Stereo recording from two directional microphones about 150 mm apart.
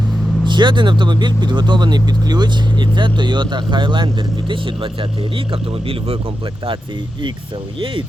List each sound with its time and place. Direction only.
0.4 s speech: 30° right (ahead or behind)